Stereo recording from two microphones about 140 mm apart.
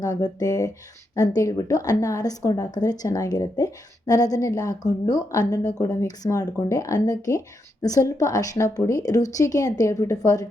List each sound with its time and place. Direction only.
0.0 s a woman's voice: 25° left (ahead or behind)